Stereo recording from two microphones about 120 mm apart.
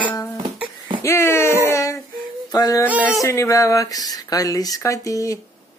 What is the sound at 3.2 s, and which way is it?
Speech, 25° left (ahead or behind).